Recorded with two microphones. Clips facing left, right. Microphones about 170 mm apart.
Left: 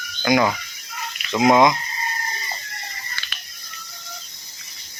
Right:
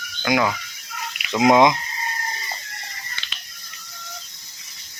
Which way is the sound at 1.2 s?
15° right (ahead or behind).